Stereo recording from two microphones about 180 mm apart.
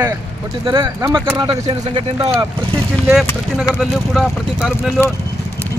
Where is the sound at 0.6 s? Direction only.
30° right (ahead or behind).